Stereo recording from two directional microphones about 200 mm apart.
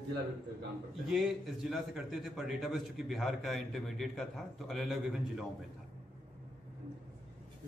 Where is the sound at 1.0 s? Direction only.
Centre (ahead or behind).